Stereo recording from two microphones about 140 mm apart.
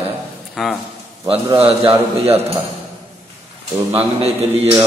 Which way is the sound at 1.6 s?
45° right (ahead or behind).